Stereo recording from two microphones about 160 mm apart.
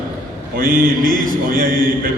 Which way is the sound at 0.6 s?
60° right (ahead or behind).